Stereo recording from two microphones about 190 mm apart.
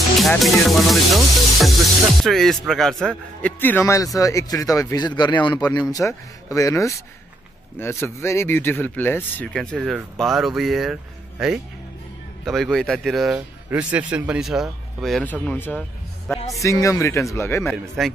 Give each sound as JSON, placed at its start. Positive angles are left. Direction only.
{"t": 0.2, "sound": "a man's voice", "side_deg": 0}
{"t": 17.6, "sound": "speech", "side_deg": 0}